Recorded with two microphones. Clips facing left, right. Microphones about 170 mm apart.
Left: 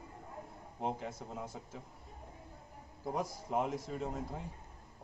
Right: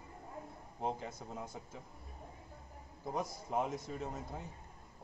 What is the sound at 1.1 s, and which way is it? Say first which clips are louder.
Speech: left 2 dB; 30° left (ahead or behind).